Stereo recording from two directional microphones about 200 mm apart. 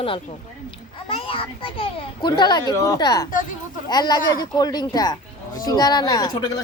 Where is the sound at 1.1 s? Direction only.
25° left (ahead or behind).